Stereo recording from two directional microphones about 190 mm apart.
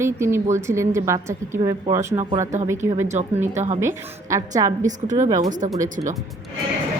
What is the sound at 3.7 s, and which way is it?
Speech, 15° right (ahead or behind).